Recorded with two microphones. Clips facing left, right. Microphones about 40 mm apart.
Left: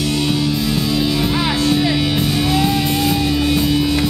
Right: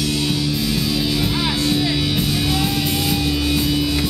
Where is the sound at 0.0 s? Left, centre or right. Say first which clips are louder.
Left 3 dB; centre.